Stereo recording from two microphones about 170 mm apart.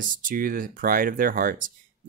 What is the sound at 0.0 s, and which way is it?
Speech, 55° right (ahead or behind).